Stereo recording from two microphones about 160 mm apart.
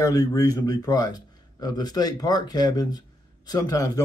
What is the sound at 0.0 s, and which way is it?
Speech, 20° left (ahead or behind).